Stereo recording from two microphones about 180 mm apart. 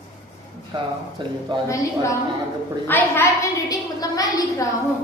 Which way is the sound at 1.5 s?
25° right (ahead or behind).